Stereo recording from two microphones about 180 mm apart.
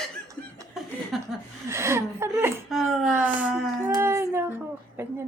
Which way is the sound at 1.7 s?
15° right (ahead or behind).